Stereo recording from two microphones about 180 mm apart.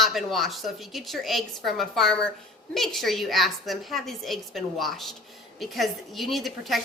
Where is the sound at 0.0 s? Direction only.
Centre (ahead or behind).